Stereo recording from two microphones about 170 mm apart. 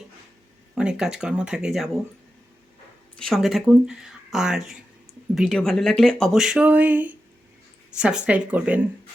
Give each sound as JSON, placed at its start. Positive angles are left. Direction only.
{"t": 0.8, "sound": "speech", "side_deg": -5}
{"t": 3.2, "sound": "speech", "side_deg": 0}